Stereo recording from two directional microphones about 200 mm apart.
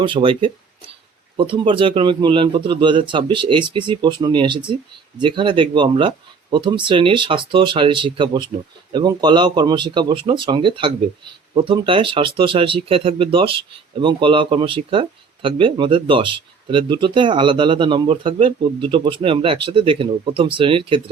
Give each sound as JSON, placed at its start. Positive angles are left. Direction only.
{"t": 0.0, "sound": "speech", "side_deg": -25}